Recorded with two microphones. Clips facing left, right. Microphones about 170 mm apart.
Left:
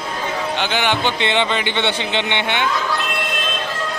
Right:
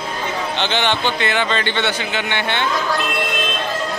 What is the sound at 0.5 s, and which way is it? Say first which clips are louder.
A man's voice: right 1 dB; 10° left (ahead or behind).